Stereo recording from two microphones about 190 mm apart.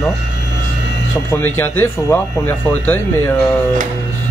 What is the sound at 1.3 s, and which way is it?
Speech, 10° left (ahead or behind).